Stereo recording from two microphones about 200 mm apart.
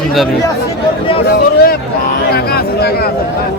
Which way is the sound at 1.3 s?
50° left (ahead or behind).